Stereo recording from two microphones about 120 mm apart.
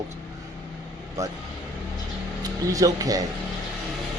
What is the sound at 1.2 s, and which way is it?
Speech, 25° right (ahead or behind).